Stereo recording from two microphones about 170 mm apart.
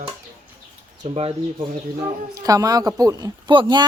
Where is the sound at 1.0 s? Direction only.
35° right (ahead or behind).